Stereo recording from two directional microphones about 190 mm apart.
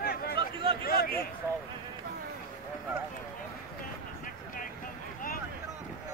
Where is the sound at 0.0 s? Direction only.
55° left (ahead or behind).